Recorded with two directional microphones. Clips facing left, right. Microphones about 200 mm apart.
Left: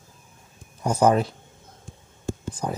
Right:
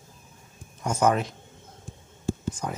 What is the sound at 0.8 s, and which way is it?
Speech, 30° left (ahead or behind).